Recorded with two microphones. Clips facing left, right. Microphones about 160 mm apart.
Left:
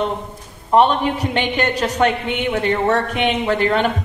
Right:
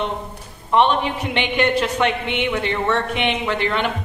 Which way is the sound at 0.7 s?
40° left (ahead or behind).